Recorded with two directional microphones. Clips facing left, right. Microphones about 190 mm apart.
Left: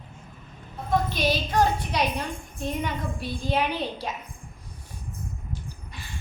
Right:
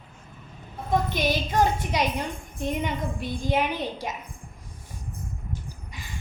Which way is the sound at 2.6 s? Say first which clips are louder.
Right 2 dB; 20° right (ahead or behind).